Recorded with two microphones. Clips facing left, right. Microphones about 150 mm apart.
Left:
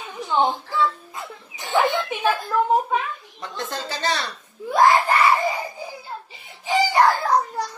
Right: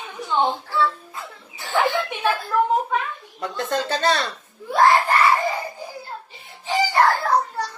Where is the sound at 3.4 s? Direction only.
60° right (ahead or behind).